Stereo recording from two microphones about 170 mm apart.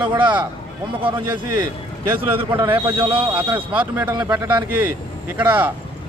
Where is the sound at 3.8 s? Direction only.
10° right (ahead or behind).